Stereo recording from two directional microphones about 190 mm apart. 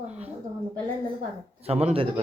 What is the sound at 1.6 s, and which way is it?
Speech, 35° right (ahead or behind).